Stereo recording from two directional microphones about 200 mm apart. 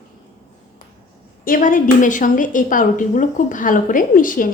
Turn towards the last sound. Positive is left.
turn(degrees=40)  # may be behind; listen again after turning